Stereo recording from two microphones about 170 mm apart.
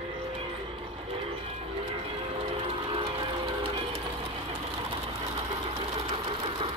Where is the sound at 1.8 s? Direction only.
35° right (ahead or behind).